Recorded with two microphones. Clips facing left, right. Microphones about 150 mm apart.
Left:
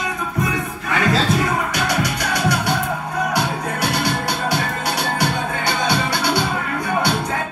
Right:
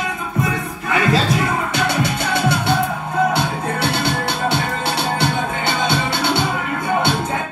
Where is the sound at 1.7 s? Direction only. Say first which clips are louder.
Right 2 dB; 25° right (ahead or behind).